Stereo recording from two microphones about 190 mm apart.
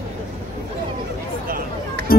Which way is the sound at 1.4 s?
50° right (ahead or behind).